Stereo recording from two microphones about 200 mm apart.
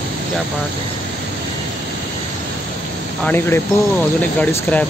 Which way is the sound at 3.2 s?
10° left (ahead or behind).